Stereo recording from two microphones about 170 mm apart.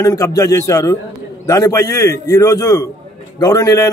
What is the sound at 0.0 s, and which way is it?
A man's voice, 20° left (ahead or behind).